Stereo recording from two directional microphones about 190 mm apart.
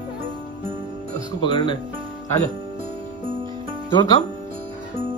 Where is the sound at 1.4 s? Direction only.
25° left (ahead or behind).